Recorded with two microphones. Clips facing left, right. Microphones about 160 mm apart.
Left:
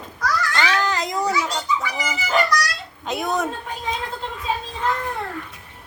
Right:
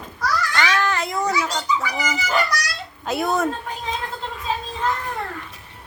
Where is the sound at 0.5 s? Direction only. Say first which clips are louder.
Right 1 dB; 15° left (ahead or behind).